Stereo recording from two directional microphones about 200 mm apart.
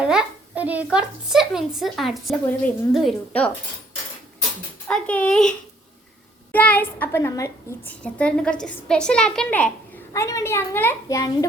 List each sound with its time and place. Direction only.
0.0 s a child's voice: 5° right (ahead or behind)
4.9 s a child's voice: 5° left (ahead or behind)